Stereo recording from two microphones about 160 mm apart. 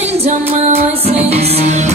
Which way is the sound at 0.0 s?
40° right (ahead or behind).